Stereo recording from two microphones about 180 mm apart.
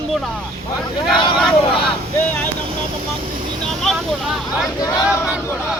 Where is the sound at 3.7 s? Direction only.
Centre (ahead or behind).